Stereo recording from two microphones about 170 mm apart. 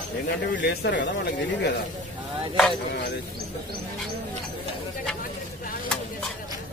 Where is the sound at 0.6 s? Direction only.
85° left.